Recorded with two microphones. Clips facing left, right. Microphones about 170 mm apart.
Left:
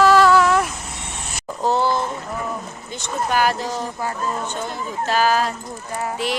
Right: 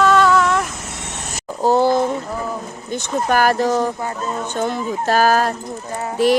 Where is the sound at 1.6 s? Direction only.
45° right (ahead or behind).